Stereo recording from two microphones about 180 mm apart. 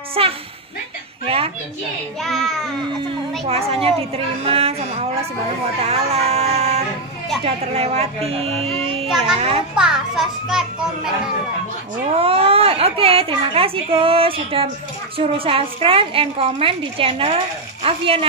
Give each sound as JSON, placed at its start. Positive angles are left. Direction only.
{"t": 0.2, "sound": "speech", "side_deg": -30}
{"t": 2.2, "sound": "a child's voice", "side_deg": 0}
{"t": 3.4, "sound": "speech", "side_deg": -35}
{"t": 9.8, "sound": "a child's voice", "side_deg": -5}
{"t": 12.2, "sound": "speech", "side_deg": -30}